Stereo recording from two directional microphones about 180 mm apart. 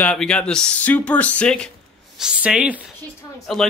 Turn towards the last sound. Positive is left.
turn(degrees=5)  # may be behind; listen again after turning